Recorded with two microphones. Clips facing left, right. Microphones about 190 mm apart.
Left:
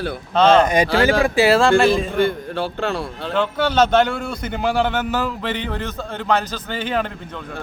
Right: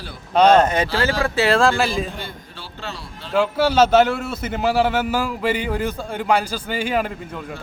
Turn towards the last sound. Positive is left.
turn(degrees=-10)  # may be behind; listen again after turning